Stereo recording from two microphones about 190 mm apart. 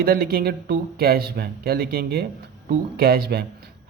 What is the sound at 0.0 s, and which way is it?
A man's voice, 55° right (ahead or behind).